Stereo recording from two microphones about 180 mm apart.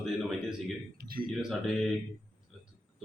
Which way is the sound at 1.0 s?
55° right (ahead or behind).